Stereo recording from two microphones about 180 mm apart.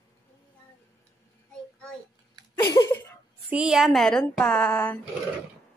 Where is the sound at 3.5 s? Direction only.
5° right (ahead or behind).